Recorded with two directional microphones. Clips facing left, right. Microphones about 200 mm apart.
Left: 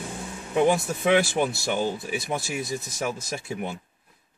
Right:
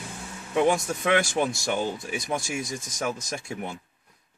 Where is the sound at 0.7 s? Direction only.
5° left (ahead or behind).